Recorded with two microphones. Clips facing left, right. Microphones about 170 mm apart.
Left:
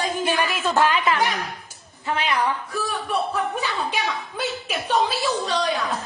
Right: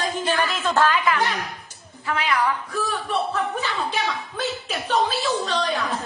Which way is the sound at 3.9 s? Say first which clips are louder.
Even; 10° left (ahead or behind).